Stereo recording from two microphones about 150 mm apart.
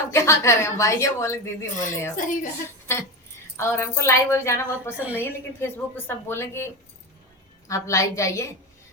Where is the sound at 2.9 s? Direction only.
15° left (ahead or behind).